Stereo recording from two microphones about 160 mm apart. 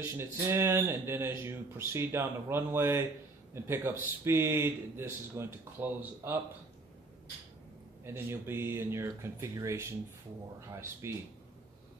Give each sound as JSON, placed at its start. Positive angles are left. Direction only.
{"t": 0.0, "sound": "speech", "side_deg": -15}
{"t": 8.0, "sound": "speech", "side_deg": -15}